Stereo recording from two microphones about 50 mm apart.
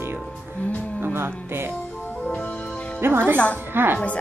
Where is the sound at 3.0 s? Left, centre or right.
Right.